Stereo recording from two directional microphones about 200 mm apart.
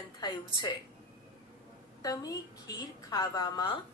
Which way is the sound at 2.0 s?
20° left (ahead or behind).